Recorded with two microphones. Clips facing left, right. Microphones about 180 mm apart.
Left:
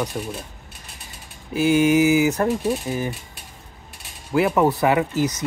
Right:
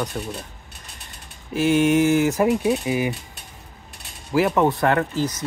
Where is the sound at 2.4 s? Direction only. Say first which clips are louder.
Right 2 dB; 10° right (ahead or behind).